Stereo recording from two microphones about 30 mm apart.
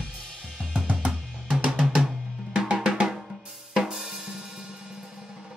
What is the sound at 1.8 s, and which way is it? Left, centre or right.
Drum, centre.